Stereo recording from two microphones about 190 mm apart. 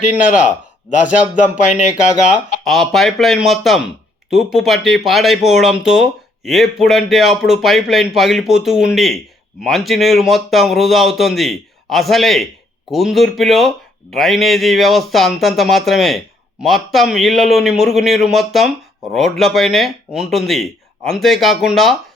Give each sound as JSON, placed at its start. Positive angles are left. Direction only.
{"t": 1.0, "sound": "speech", "side_deg": -10}
{"t": 2.0, "sound": "speech", "side_deg": 40}
{"t": 2.6, "sound": "speech", "side_deg": 0}